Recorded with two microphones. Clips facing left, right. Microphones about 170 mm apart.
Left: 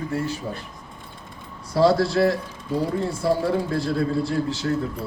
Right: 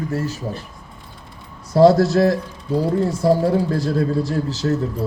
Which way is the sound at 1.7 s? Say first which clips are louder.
Right 6 dB; 45° right (ahead or behind).